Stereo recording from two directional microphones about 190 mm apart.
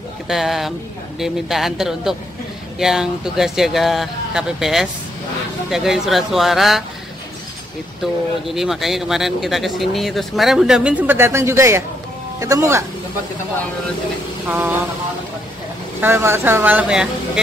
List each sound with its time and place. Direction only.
0.3 s speech: centre (ahead or behind)
8.0 s speech: centre (ahead or behind)
14.5 s speech: 10° right (ahead or behind)
16.0 s speech: 10° right (ahead or behind)